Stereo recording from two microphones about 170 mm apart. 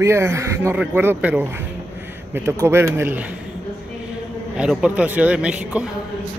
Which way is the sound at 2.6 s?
15° right (ahead or behind).